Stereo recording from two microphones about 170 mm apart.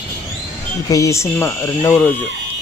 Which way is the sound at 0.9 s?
20° left (ahead or behind).